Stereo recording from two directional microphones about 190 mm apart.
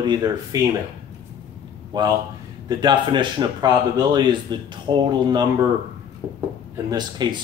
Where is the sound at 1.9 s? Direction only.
25° right (ahead or behind).